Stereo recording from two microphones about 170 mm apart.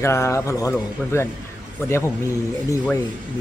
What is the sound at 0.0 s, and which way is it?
Speech, 15° left (ahead or behind).